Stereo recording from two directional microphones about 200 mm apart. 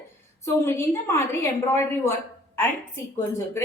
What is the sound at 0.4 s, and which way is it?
A woman's voice, 15° left (ahead or behind).